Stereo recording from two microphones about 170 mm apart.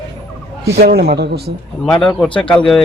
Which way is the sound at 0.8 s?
70° right (ahead or behind).